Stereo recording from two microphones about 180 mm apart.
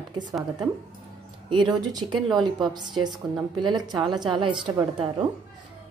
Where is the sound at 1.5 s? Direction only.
25° right (ahead or behind).